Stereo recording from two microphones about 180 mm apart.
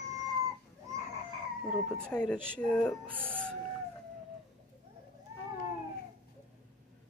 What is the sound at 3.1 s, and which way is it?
Speech, 10° right (ahead or behind).